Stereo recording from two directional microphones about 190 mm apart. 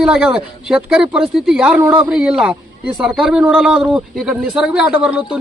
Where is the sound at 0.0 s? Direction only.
5° right (ahead or behind).